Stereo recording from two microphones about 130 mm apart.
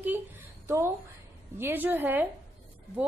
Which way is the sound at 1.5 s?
15° right (ahead or behind).